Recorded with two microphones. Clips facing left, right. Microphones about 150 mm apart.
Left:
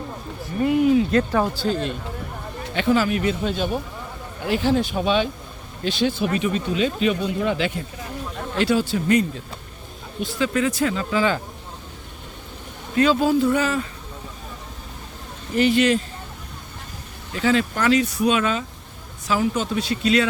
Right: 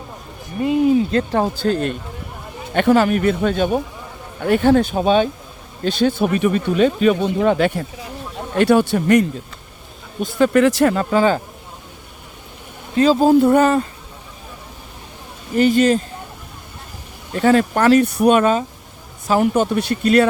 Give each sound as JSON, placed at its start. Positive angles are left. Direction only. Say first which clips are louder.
{"t": 0.6, "sound": "speech", "louder": "right 2 dB", "side_deg": -25}
{"t": 2.7, "sound": "speech", "louder": "right 6 dB", "side_deg": -60}
{"t": 4.9, "sound": "speech", "louder": "right 5 dB", "side_deg": -45}
{"t": 10.2, "sound": "speech", "louder": "right 8 dB", "side_deg": -50}
{"t": 13.0, "sound": "speech", "louder": "right 5 dB", "side_deg": -40}
{"t": 13.3, "sound": "speech", "louder": "right 7 dB", "side_deg": -55}
{"t": 15.5, "sound": "speech", "louder": "right 4 dB", "side_deg": -45}
{"t": 17.3, "sound": "speech", "louder": "right 6 dB", "side_deg": -50}